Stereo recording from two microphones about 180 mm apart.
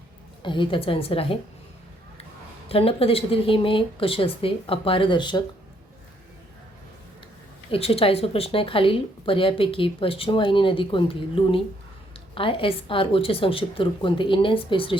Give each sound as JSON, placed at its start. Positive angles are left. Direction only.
{"t": 0.4, "sound": "a woman's voice", "side_deg": 25}
{"t": 2.6, "sound": "a woman's voice", "side_deg": 30}
{"t": 7.7, "sound": "a woman's voice", "side_deg": 35}